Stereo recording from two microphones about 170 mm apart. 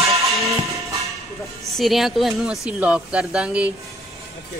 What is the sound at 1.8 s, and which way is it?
Speech, centre (ahead or behind).